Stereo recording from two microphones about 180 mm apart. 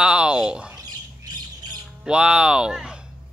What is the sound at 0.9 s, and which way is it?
Squawk, 20° right (ahead or behind).